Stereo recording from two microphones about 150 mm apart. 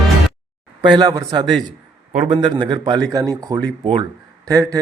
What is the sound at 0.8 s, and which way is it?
Speech, 25° right (ahead or behind).